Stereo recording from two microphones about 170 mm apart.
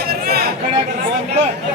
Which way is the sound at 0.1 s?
65° right (ahead or behind).